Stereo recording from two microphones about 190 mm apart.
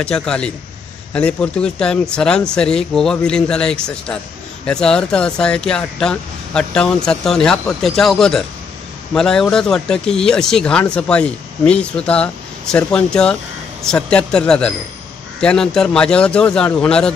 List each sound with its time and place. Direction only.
0.0 s speech: 5° left (ahead or behind)